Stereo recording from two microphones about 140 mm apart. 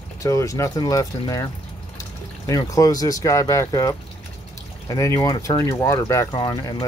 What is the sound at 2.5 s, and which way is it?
Speech, 25° left (ahead or behind).